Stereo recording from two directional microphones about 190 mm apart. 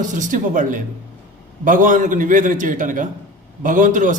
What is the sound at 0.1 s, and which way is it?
A man's voice, 40° right (ahead or behind).